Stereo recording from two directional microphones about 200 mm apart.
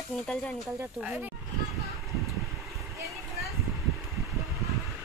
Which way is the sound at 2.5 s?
Centre (ahead or behind).